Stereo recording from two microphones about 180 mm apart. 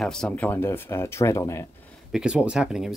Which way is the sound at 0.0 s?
5° left (ahead or behind).